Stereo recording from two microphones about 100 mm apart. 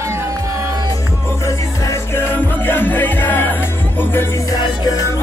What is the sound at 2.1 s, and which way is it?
Music, 20° left (ahead or behind).